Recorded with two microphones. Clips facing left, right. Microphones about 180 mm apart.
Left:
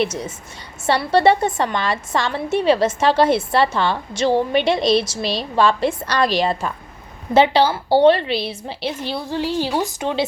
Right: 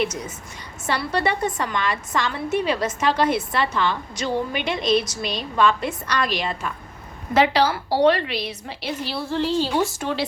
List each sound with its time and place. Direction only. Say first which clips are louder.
0.0 s a woman's voice: left 3 dB; 30° left (ahead or behind)
9.3 s speech: even; 15° left (ahead or behind)